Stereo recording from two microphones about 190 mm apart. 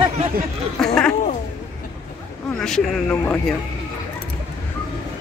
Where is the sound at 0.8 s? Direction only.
5° left (ahead or behind).